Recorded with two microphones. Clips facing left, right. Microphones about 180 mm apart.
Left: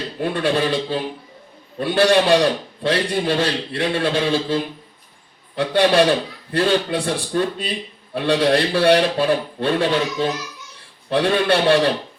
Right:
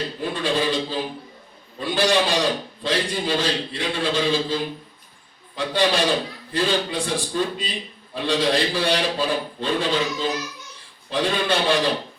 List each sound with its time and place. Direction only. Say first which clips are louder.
0.2 s a man's voice: left 5 dB; 60° left (ahead or behind)